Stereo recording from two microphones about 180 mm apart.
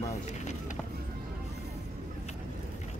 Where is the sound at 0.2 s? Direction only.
40° left (ahead or behind).